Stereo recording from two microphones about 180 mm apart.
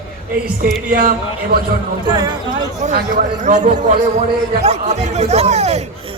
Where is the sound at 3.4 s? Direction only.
45° right (ahead or behind).